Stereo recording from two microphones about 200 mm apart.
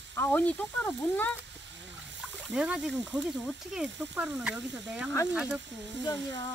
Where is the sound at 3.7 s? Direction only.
5° right (ahead or behind).